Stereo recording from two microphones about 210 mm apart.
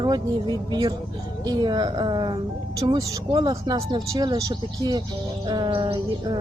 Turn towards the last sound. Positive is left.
turn(degrees=-25)  # may be behind; listen again after turning